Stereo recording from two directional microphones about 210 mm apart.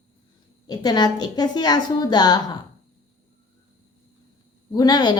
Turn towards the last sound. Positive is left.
turn(degrees=20)  # may be behind; listen again after turning